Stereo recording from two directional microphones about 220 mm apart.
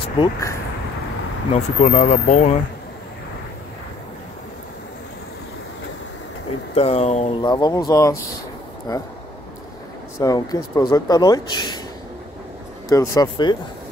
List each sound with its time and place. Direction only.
0.2 s speech: 15° left (ahead or behind)
1.5 s speech: 30° left (ahead or behind)
6.7 s speech: 25° left (ahead or behind)
10.2 s speech: 15° left (ahead or behind)
12.9 s speech: 15° left (ahead or behind)